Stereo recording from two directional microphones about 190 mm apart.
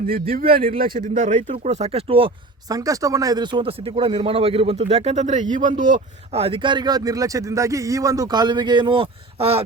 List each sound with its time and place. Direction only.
0.1 s a man's voice: 50° right (ahead or behind)
1.4 s speech: 30° right (ahead or behind)